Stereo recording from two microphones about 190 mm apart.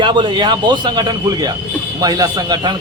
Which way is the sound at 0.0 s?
25° right (ahead or behind).